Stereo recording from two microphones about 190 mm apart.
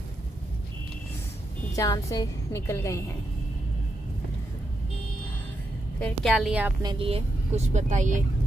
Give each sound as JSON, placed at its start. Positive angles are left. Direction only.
{"t": 1.8, "sound": "a woman's voice", "side_deg": 15}
{"t": 5.9, "sound": "a woman's voice", "side_deg": 5}
{"t": 6.8, "sound": "speech", "side_deg": -25}